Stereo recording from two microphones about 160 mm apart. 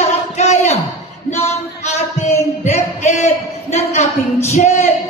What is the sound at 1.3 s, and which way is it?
Music, 45° left (ahead or behind).